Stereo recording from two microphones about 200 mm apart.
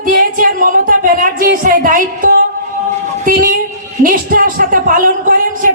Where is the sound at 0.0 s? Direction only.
45° right (ahead or behind).